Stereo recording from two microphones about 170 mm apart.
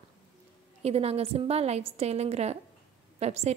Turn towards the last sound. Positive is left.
turn(degrees=-40)  # may be behind; listen again after turning